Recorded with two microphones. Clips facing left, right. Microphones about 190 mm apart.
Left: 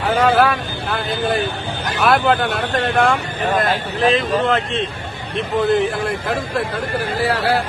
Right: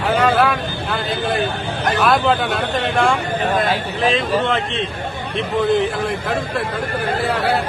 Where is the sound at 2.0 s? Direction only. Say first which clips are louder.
Left 3 dB; centre (ahead or behind).